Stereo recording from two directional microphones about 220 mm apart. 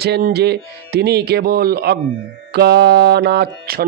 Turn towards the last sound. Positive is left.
turn(degrees=-45)  # may be behind; listen again after turning